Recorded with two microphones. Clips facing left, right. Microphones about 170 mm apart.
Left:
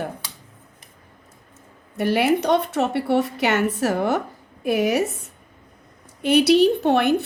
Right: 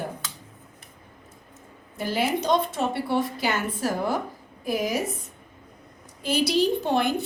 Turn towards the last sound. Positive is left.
turn(degrees=65)  # may be behind; listen again after turning